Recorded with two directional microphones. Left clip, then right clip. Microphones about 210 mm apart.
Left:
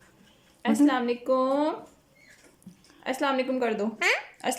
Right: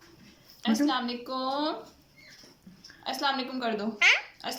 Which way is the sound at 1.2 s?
35° left (ahead or behind).